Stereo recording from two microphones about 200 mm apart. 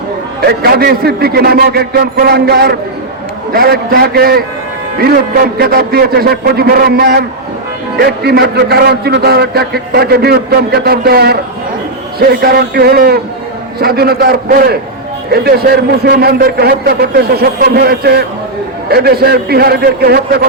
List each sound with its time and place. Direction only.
0.4 s speech: 50° right (ahead or behind)